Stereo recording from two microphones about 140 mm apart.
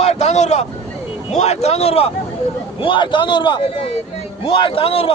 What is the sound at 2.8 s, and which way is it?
A man's voice, 35° left (ahead or behind).